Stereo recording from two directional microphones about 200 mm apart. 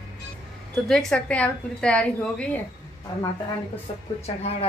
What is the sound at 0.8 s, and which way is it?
A woman's voice, centre (ahead or behind).